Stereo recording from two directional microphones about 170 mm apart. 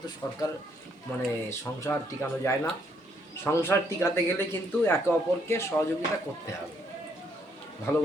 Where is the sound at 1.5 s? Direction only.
15° left (ahead or behind).